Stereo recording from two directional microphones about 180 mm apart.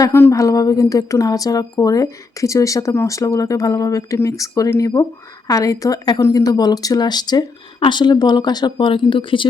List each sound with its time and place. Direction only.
0.0 s a woman's voice: 15° left (ahead or behind)